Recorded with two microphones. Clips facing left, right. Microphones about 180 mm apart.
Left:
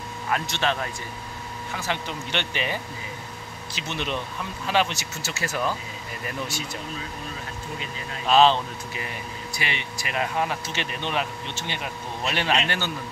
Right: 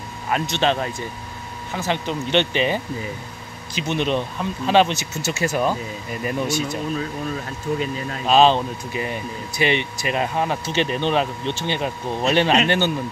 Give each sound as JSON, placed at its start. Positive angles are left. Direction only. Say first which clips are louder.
{"t": 0.3, "sound": "speech", "louder": "right 5 dB", "side_deg": -25}
{"t": 8.3, "sound": "speech", "louder": "right 3 dB", "side_deg": -20}